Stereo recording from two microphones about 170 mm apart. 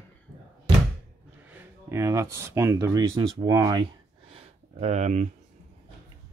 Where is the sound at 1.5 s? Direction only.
15° right (ahead or behind).